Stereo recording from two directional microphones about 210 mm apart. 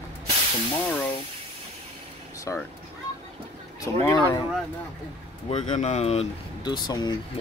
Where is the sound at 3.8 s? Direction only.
15° left (ahead or behind).